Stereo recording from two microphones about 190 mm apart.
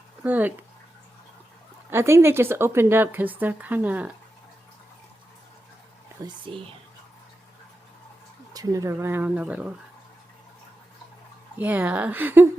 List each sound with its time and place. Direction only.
0.2 s speech: 10° right (ahead or behind)
1.9 s speech: 15° right (ahead or behind)
6.2 s speech: 25° right (ahead or behind)
8.5 s speech: 15° right (ahead or behind)
11.5 s speech: 10° right (ahead or behind)